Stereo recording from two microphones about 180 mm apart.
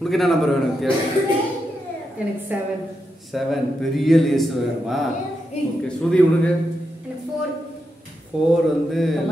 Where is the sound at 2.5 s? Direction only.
10° right (ahead or behind).